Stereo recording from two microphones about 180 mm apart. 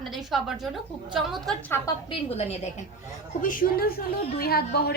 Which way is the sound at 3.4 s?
50° left (ahead or behind).